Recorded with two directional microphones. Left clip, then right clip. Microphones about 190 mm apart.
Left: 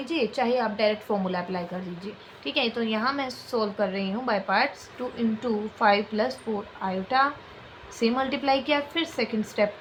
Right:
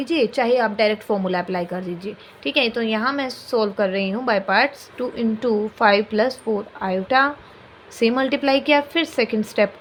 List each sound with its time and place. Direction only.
0.0 s a woman's voice: 35° right (ahead or behind)